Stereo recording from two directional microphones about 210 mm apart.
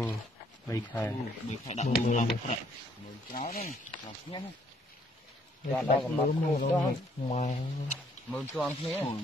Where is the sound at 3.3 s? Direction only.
40° left (ahead or behind).